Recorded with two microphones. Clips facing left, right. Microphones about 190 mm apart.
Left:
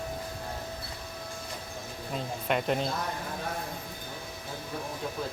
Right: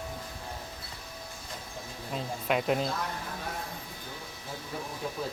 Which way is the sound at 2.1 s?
Centre (ahead or behind).